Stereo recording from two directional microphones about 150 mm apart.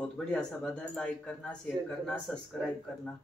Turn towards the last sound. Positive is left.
turn(degrees=5)  # may be behind; listen again after turning